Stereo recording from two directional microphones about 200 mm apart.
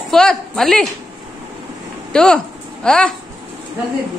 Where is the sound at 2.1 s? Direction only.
5° left (ahead or behind).